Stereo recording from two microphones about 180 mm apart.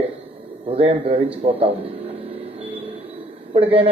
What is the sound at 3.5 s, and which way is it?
Speech, 30° right (ahead or behind).